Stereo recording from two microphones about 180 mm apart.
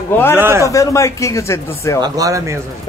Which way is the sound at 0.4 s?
15° right (ahead or behind).